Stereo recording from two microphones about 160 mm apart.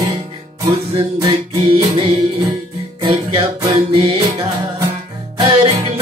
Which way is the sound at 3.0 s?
35° right (ahead or behind).